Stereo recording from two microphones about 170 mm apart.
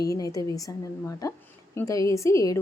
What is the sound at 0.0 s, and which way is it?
A woman's voice, 20° left (ahead or behind).